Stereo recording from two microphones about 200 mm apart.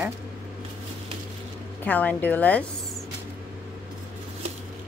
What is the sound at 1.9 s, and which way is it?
Speech, 10° left (ahead or behind).